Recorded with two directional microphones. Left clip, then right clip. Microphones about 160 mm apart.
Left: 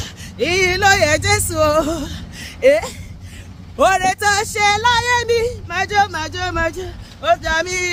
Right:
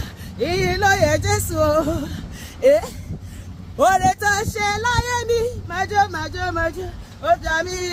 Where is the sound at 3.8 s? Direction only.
20° left (ahead or behind).